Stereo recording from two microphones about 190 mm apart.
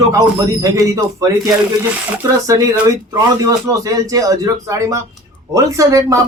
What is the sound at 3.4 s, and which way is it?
Speech, 20° right (ahead or behind).